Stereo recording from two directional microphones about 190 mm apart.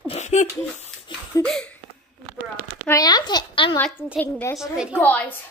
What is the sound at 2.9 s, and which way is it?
Speech, 20° left (ahead or behind).